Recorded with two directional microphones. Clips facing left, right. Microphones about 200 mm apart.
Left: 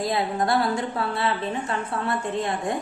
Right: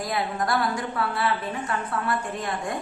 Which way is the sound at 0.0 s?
25° left (ahead or behind).